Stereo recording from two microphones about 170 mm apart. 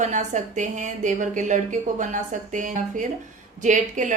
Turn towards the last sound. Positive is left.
turn(degrees=-45)  # may be behind; listen again after turning